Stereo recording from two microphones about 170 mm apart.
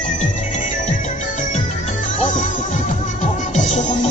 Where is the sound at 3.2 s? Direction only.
45° left (ahead or behind).